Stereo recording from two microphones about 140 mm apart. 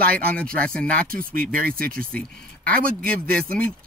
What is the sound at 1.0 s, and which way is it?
Speech, 90° right.